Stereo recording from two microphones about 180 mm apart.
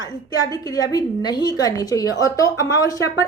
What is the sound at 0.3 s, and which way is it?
A woman's voice, 20° left (ahead or behind).